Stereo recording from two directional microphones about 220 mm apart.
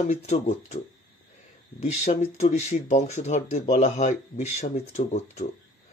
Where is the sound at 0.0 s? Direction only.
30° left (ahead or behind).